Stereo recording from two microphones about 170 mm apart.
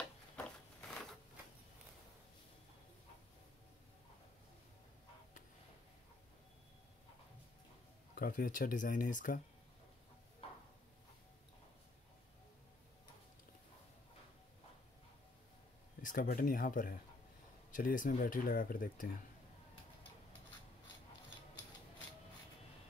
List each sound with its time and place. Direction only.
0.4 s a sound: 5° left (ahead or behind)
8.1 s speech: 55° left (ahead or behind)
16.0 s speech: 55° left (ahead or behind)